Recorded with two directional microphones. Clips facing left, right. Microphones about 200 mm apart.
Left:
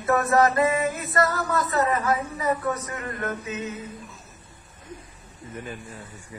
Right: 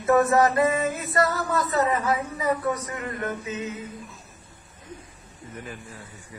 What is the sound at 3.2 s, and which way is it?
Mantra, 20° right (ahead or behind).